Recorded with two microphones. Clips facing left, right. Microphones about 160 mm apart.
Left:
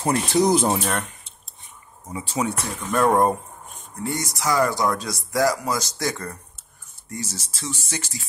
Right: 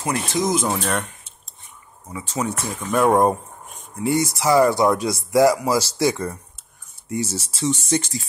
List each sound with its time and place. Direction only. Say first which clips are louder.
0.0 s speech: left 3 dB; 35° left (ahead or behind)
2.2 s speech: even; centre (ahead or behind)
4.0 s speech: right 6 dB; 20° right (ahead or behind)